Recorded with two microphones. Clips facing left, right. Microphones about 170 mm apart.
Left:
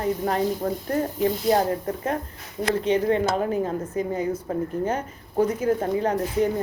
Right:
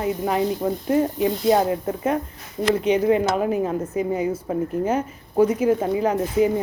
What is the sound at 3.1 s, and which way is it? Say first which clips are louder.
A woman's voice: right 3 dB; 10° right (ahead or behind).